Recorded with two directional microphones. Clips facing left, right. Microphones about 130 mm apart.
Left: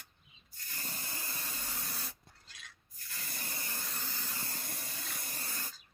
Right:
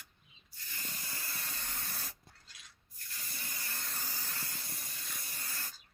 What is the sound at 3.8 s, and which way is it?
Steam, 5° right (ahead or behind).